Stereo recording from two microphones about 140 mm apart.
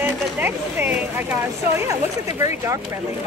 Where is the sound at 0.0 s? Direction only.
15° right (ahead or behind).